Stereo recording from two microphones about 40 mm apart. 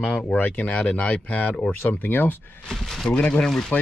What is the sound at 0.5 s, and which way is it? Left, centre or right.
Speech, left.